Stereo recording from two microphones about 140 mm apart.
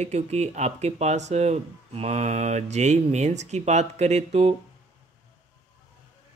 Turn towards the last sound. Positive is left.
turn(degrees=-50)  # may be behind; listen again after turning